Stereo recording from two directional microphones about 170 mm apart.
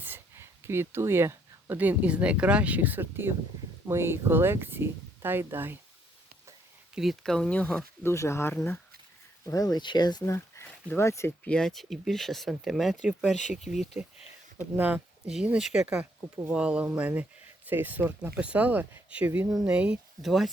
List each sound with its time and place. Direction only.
0.0 s speech: 15° right (ahead or behind)
6.9 s speech: centre (ahead or behind); by 11.5 s 15° left (ahead or behind)
11.5 s speech: centre (ahead or behind)